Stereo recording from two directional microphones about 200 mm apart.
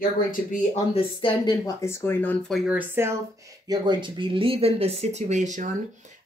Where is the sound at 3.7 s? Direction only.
20° right (ahead or behind); by 5.7 s 40° right (ahead or behind).